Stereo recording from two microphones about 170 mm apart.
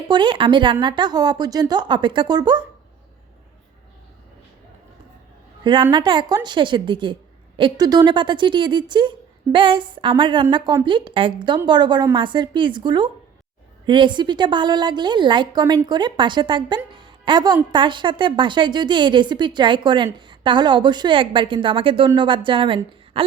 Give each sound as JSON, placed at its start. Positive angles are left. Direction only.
{"t": 0.1, "sound": "speech", "side_deg": -30}
{"t": 5.6, "sound": "speech", "side_deg": -25}